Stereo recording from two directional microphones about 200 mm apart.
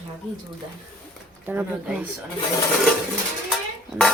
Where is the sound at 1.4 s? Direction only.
10° right (ahead or behind).